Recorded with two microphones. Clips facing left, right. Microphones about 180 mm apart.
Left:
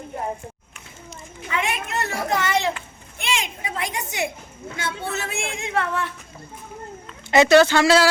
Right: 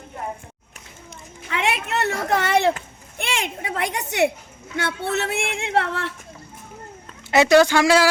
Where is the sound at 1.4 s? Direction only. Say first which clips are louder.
Right 2 dB; 70° right (ahead or behind).